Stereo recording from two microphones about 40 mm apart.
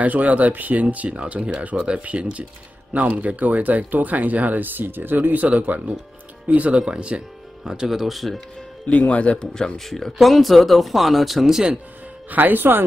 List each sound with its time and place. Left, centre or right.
0.0 s speech: right
5.3 s speech: right
6.8 s speech: right; by 8.4 s centre
8.8 s speech: left
9.8 s speech: centre
12.3 s speech: right